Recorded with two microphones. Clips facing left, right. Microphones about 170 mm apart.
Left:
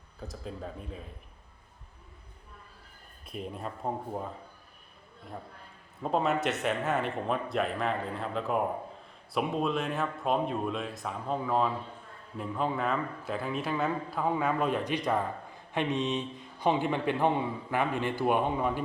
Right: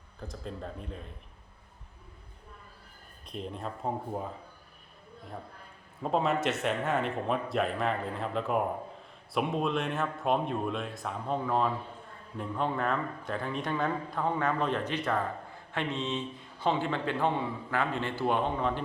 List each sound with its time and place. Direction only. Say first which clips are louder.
0.2 s a man's voice: even; 5° left (ahead or behind)
3.2 s a man's voice: even; 5° left (ahead or behind)
6.0 s a man's voice: even; centre (ahead or behind)